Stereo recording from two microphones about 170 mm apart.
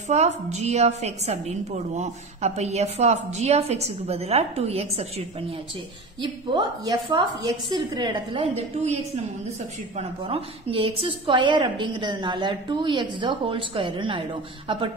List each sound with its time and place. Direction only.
0.1 s a woman's voice: 40° right (ahead or behind)
6.2 s a woman's voice: 25° right (ahead or behind)